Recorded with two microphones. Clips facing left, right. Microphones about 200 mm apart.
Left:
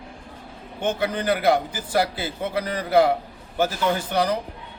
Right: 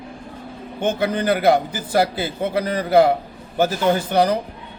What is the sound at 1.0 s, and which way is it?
Speech, 45° right (ahead or behind).